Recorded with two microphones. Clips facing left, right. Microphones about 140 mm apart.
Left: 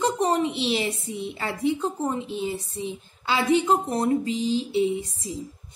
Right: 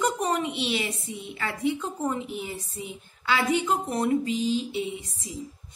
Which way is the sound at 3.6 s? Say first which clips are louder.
Left 3 dB; 35° left (ahead or behind).